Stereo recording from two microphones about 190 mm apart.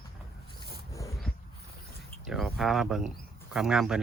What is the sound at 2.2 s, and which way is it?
Speech, centre (ahead or behind).